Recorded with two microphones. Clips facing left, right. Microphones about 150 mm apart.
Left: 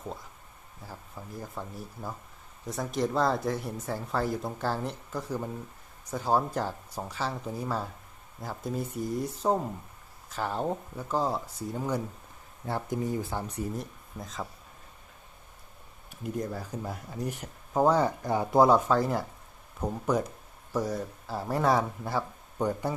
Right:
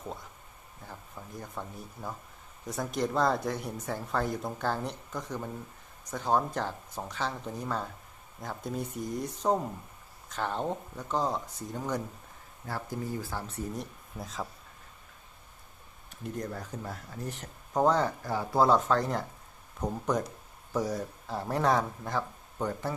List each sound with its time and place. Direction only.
0.9 s speech: 5° left (ahead or behind)
12.6 s speech: 20° left (ahead or behind)
13.7 s speech: centre (ahead or behind)
16.2 s speech: 5° left (ahead or behind)